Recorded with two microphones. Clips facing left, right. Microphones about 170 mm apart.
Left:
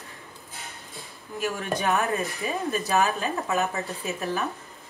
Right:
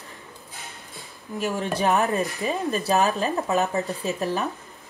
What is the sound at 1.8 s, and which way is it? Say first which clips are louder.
A woman's voice: right 4 dB; 35° right (ahead or behind).